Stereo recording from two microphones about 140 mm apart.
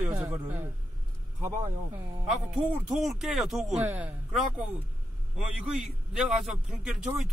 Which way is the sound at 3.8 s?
10° right (ahead or behind).